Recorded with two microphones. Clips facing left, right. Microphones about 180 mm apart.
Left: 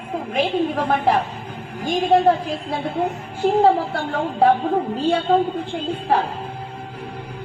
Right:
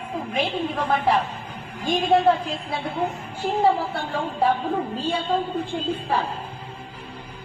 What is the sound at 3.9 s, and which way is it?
A woman's voice, 65° left (ahead or behind).